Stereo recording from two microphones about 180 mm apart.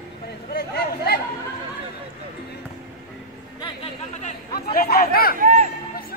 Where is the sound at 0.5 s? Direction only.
65° left (ahead or behind).